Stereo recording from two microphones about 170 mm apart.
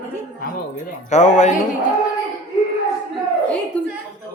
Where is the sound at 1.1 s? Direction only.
45° left (ahead or behind).